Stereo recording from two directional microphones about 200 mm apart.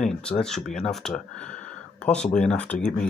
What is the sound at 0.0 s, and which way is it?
Speech, 5° left (ahead or behind).